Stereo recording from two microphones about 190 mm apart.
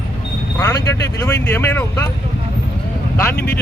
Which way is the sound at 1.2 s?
15° left (ahead or behind).